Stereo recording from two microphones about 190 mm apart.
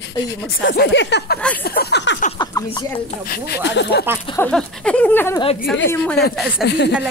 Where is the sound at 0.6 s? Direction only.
60° left (ahead or behind).